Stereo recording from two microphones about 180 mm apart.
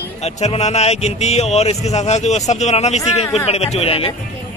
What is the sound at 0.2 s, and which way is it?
Speech, 35° left (ahead or behind).